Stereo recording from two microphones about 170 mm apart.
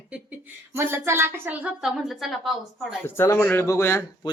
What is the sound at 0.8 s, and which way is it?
A woman's voice, 15° right (ahead or behind).